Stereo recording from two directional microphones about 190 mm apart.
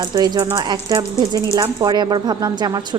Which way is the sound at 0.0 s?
20° right (ahead or behind).